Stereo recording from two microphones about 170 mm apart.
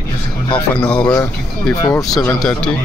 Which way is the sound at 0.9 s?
25° left (ahead or behind).